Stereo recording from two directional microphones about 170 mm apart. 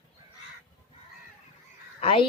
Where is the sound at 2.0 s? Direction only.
35° left (ahead or behind).